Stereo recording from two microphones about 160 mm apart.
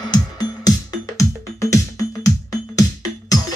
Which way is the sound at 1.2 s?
20° left (ahead or behind).